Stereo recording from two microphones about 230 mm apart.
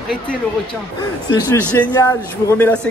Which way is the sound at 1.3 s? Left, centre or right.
Centre.